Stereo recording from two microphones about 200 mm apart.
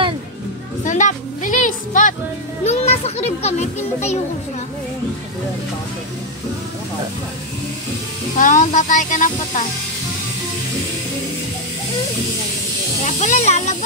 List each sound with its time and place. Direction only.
0.8 s music: 40° left (ahead or behind)
2.6 s children playing: 35° left (ahead or behind)
8.4 s speech: 40° left (ahead or behind)
13.0 s speech: 35° left (ahead or behind)